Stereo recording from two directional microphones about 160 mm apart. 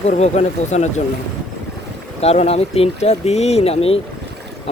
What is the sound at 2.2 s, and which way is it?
Speech, 40° left (ahead or behind).